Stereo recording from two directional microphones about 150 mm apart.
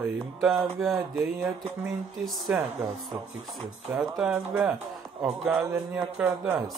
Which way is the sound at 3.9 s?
5° right (ahead or behind).